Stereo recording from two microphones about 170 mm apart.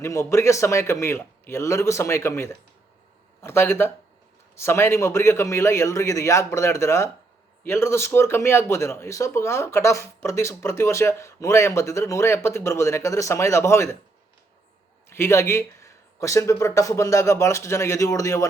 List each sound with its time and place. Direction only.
0.0 s speech: 15° left (ahead or behind)
15.1 s speech: 15° left (ahead or behind)